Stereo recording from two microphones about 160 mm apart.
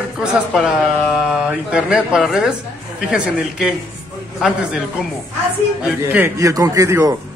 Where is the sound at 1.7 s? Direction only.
5° right (ahead or behind).